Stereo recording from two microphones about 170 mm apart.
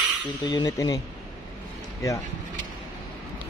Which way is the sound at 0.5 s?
20° left (ahead or behind).